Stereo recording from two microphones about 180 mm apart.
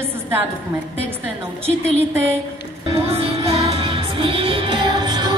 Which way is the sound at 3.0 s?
35° right (ahead or behind).